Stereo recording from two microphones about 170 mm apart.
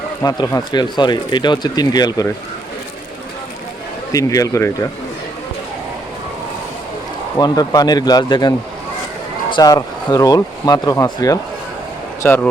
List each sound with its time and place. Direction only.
0.2 s speech: 20° left (ahead or behind)
4.1 s speech: 20° left (ahead or behind)
7.3 s speech: 25° left (ahead or behind)